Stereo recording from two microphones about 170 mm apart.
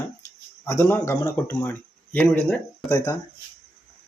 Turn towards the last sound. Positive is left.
turn(degrees=20)  # may be behind; listen again after turning